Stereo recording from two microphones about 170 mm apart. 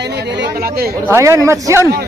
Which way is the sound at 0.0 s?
85° right.